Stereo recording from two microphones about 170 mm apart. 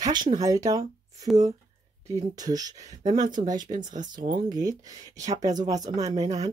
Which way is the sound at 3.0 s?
45° right (ahead or behind).